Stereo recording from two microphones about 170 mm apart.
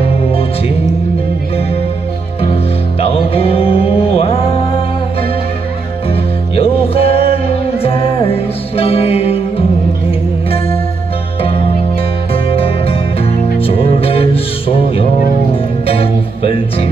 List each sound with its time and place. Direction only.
2.5 s music: 35° left (ahead or behind)
6.5 s music: 35° left (ahead or behind)
12.4 s music: 35° left (ahead or behind)
15.9 s music: 35° left (ahead or behind)